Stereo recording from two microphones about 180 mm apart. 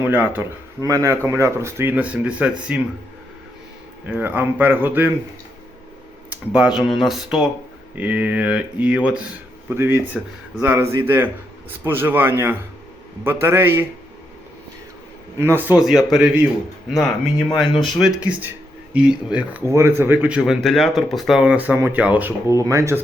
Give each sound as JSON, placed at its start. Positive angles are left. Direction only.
{"t": 0.3, "sound": "speech", "side_deg": -20}
{"t": 4.0, "sound": "speech", "side_deg": -10}
{"t": 6.3, "sound": "speech", "side_deg": -5}
{"t": 15.4, "sound": "speech", "side_deg": -10}
{"t": 15.8, "sound": "speech", "side_deg": 0}